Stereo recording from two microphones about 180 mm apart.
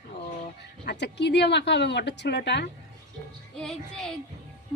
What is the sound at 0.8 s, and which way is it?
A woman's voice, 70° left (ahead or behind).